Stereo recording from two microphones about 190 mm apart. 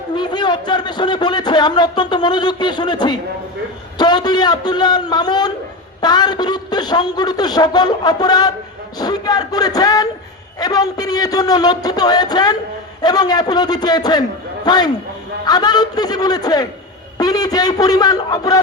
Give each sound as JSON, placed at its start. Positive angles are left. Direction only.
{"t": 0.2, "sound": "speech", "side_deg": 25}